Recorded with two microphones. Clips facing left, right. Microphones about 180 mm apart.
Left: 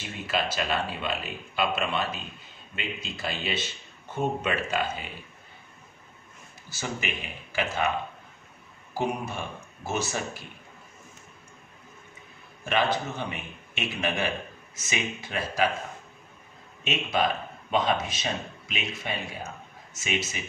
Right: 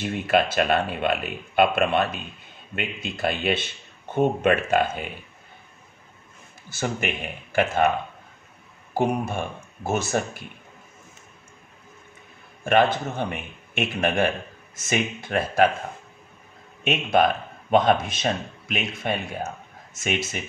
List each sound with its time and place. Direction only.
0.0 s speech: 55° right (ahead or behind)
6.7 s speech: 55° right (ahead or behind)
9.8 s speech: 50° right (ahead or behind)
12.6 s speech: 50° right (ahead or behind)
16.8 s speech: 55° right (ahead or behind)